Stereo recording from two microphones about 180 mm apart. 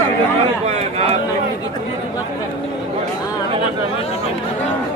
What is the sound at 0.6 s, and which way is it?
Speech, 35° right (ahead or behind).